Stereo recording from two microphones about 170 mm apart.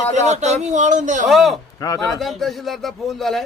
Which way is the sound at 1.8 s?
20° left (ahead or behind).